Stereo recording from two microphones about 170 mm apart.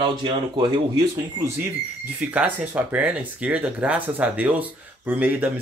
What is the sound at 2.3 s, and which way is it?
Speech, 10° right (ahead or behind).